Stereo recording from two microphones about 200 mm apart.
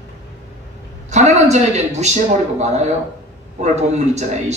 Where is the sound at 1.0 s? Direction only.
35° right (ahead or behind).